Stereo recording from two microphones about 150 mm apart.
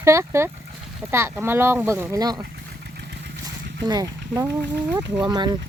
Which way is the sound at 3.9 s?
25° right (ahead or behind).